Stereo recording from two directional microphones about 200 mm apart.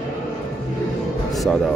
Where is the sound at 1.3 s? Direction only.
Centre (ahead or behind).